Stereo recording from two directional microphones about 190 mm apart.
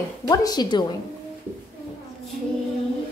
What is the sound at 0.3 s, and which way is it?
Speech, 20° left (ahead or behind).